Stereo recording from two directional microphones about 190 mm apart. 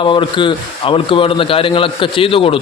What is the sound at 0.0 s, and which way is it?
A man's voice, 25° left (ahead or behind).